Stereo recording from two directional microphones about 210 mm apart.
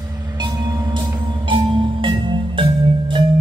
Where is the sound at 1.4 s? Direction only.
25° right (ahead or behind).